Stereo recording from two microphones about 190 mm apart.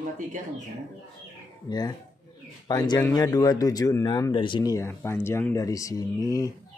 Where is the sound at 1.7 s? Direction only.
20° left (ahead or behind).